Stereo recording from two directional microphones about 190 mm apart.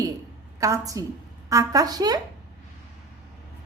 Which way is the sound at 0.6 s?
15° right (ahead or behind).